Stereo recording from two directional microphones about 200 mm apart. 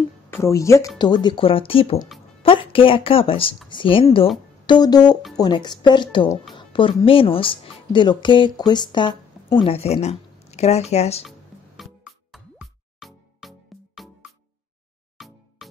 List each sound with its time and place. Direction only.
0.3 s speech: 15° left (ahead or behind); by 11.2 s 30° left (ahead or behind)
11.2 s music: centre (ahead or behind)
15.2 s music: centre (ahead or behind)